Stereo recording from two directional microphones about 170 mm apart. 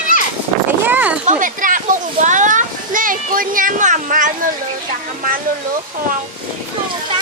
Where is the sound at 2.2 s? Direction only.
45° right (ahead or behind).